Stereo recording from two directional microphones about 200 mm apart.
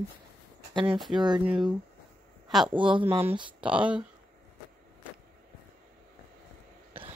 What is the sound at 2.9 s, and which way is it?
Speech, 25° right (ahead or behind).